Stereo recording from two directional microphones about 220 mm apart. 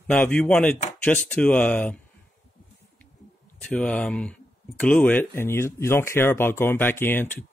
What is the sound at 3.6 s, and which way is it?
Speech, 5° left (ahead or behind).